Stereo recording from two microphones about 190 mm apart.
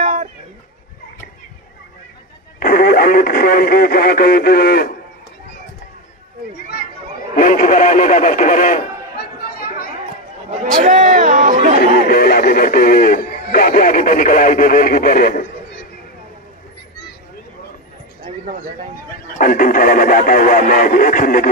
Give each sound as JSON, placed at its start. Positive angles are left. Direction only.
{"t": 0.0, "sound": "a sound", "side_deg": -40}
{"t": 2.6, "sound": "speech", "side_deg": 50}
{"t": 7.3, "sound": "a sound", "side_deg": 45}
{"t": 10.6, "sound": "chatter", "side_deg": -40}
{"t": 11.8, "sound": "speech", "side_deg": 50}
{"t": 19.3, "sound": "speech", "side_deg": 45}